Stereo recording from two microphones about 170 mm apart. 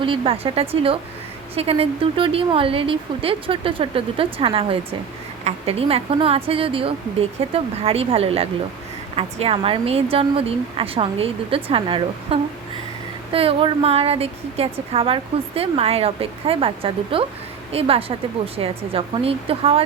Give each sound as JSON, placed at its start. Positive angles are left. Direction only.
{"t": 0.0, "sound": "a woman's voice", "side_deg": -30}